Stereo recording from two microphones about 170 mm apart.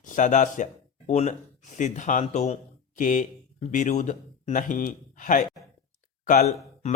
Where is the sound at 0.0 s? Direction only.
50° left (ahead or behind).